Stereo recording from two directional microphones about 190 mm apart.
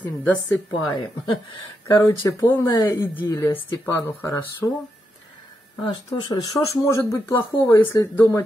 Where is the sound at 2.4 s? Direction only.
20° left (ahead or behind).